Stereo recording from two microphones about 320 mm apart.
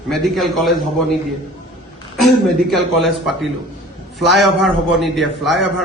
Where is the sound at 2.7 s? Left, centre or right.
Centre.